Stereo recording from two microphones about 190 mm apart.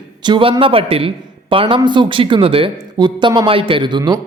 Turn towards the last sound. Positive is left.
turn(degrees=-25)  # may be behind; listen again after turning